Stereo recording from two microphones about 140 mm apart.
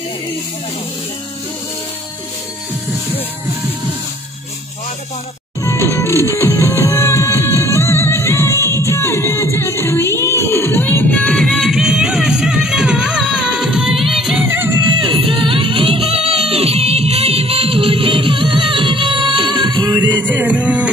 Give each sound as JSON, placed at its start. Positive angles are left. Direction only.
{"t": 5.6, "sound": "music", "side_deg": 20}
{"t": 14.5, "sound": "music", "side_deg": -20}
{"t": 15.0, "sound": "music", "side_deg": -40}
{"t": 20.1, "sound": "music", "side_deg": -10}